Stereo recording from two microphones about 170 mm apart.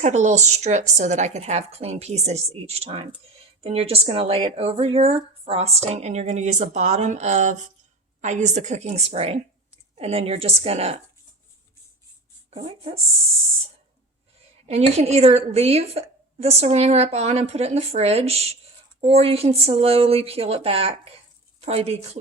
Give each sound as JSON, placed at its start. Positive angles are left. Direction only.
{"t": 0.0, "sound": "a woman's voice", "side_deg": -45}
{"t": 12.5, "sound": "a woman's voice", "side_deg": -35}
{"t": 14.7, "sound": "a woman's voice", "side_deg": -40}